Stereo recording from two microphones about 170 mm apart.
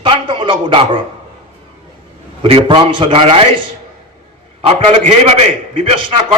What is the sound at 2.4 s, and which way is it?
A man's voice, 35° right (ahead or behind).